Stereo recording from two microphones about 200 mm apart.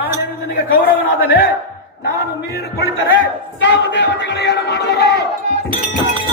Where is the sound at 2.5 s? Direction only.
50° left (ahead or behind).